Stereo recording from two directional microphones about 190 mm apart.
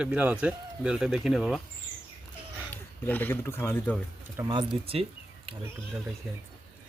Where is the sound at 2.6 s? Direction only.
10° left (ahead or behind).